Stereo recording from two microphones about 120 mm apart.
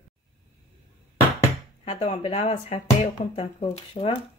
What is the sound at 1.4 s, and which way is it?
Speech, 60° left (ahead or behind).